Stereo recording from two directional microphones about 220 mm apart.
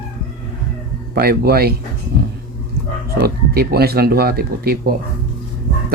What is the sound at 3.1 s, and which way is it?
Speech, 45° right (ahead or behind).